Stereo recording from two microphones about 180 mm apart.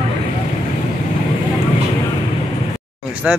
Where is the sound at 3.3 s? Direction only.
5° right (ahead or behind).